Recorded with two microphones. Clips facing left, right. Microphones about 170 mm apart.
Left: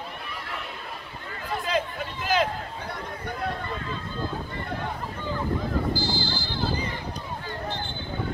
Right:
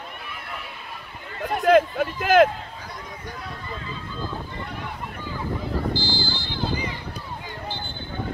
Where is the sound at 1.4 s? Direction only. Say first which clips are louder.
Right 10 dB; 55° right (ahead or behind).